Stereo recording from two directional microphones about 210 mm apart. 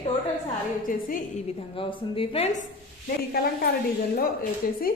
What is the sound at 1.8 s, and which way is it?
Speech, 25° left (ahead or behind).